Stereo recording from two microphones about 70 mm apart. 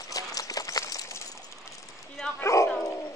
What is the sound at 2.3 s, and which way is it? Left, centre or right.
Speech, left.